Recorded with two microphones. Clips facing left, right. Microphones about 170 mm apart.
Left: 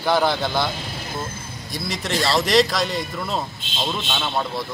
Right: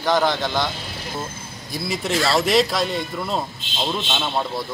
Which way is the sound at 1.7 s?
5° right (ahead or behind).